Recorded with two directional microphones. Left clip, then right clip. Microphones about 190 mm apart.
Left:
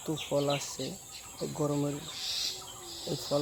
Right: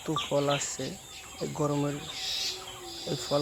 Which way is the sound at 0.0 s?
15° right (ahead or behind).